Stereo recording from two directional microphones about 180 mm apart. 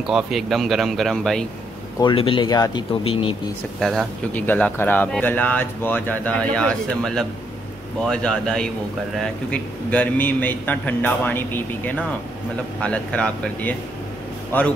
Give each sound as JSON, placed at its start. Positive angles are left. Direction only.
{"t": 0.0, "sound": "speech", "side_deg": 0}
{"t": 2.0, "sound": "speech", "side_deg": 25}
{"t": 3.8, "sound": "a man's voice", "side_deg": 0}